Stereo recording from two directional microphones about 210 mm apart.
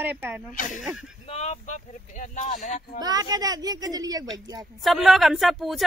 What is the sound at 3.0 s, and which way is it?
Speech, 20° right (ahead or behind).